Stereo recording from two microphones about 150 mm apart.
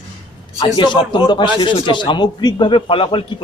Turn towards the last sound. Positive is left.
turn(degrees=35)  # may be behind; listen again after turning